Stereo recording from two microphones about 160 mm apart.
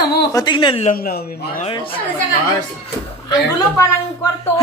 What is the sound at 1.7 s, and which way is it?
Speech, 35° left (ahead or behind).